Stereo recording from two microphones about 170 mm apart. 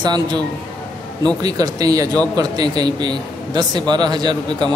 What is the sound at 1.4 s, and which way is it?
A man's voice, 20° right (ahead or behind).